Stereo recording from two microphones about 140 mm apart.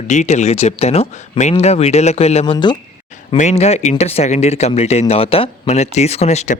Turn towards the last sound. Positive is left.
turn(degrees=50)  # may be behind; listen again after turning